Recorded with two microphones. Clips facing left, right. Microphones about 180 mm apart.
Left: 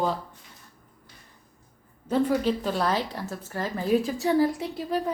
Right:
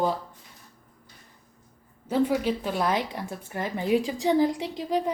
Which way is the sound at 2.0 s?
10° right (ahead or behind).